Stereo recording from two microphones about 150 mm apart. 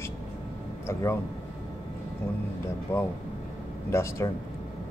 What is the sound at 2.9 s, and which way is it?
Speech, 15° left (ahead or behind).